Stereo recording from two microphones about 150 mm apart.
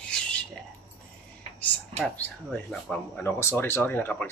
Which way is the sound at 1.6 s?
10° left (ahead or behind).